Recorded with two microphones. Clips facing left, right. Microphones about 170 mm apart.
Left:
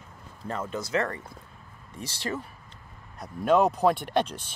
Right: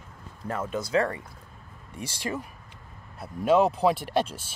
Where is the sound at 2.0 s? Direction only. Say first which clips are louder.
Right 1 dB; 10° right (ahead or behind).